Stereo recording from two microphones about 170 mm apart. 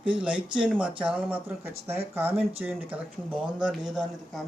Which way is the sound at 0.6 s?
5° right (ahead or behind).